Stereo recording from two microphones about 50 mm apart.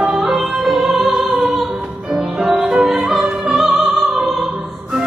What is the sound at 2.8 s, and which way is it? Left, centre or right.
Opera, centre.